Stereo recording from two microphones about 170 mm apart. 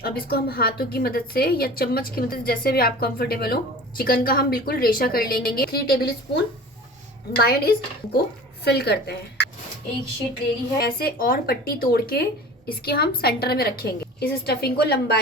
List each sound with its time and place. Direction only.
0.0 s a woman's voice: 65° left (ahead or behind)
10.8 s a woman's voice: 60° left (ahead or behind)